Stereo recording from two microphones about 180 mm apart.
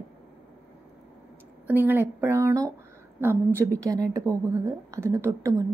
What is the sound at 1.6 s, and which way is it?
A woman's voice, 10° right (ahead or behind).